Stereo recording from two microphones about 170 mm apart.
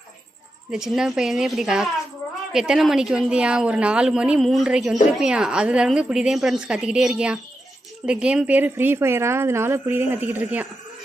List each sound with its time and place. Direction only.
0.7 s speech: 5° right (ahead or behind)